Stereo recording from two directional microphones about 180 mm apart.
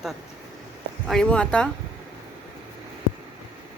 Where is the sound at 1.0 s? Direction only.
5° left (ahead or behind).